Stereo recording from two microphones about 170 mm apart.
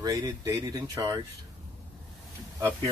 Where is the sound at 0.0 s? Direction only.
20° right (ahead or behind).